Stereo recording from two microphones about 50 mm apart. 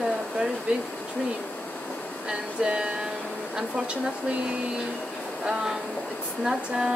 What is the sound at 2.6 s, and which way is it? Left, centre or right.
Music, centre.